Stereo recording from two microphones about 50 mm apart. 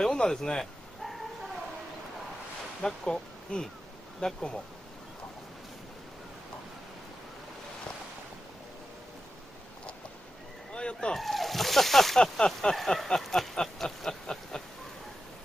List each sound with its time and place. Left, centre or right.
0.0 s speech: centre
2.8 s speech: centre
10.7 s a sound: centre
11.1 s splash: centre
12.2 s speech: centre
12.7 s a sound: centre